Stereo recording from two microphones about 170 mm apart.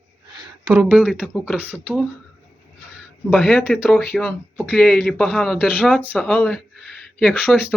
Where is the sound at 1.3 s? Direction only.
5° left (ahead or behind).